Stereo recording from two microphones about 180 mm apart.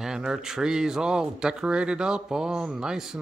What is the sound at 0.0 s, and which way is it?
Speech, 5° right (ahead or behind).